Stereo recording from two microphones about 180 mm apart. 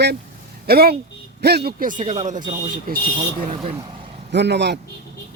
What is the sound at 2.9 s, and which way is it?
Speech, 55° right (ahead or behind).